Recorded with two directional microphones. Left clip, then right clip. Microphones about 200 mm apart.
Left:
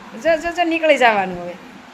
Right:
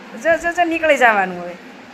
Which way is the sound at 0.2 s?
30° left (ahead or behind).